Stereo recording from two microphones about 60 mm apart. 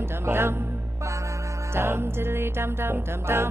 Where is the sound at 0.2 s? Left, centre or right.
Right.